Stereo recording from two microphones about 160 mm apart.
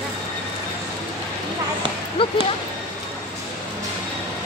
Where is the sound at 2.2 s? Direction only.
35° left (ahead or behind).